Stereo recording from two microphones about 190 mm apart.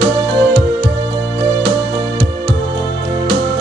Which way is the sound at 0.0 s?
60° right (ahead or behind).